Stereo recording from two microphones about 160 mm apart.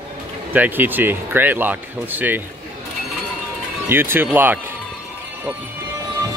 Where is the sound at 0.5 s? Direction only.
10° right (ahead or behind).